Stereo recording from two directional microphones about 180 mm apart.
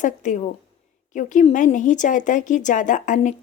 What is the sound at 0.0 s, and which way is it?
A woman's voice, 45° left (ahead or behind).